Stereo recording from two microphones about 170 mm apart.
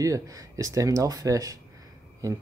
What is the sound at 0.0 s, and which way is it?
Speech, 20° right (ahead or behind).